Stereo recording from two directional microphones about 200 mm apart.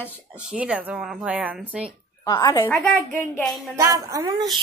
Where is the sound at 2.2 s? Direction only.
15° left (ahead or behind).